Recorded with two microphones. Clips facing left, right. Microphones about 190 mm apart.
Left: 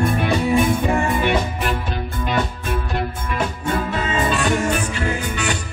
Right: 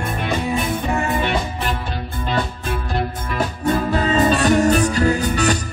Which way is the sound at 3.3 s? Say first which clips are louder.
Right 3 dB; 35° right (ahead or behind).